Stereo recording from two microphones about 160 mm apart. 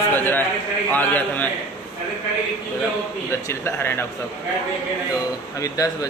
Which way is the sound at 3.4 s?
15° left (ahead or behind).